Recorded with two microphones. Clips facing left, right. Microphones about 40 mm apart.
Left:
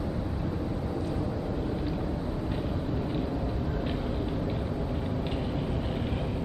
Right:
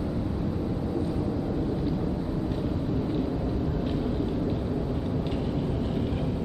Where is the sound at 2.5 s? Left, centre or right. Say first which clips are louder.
Right 3 dB; centre.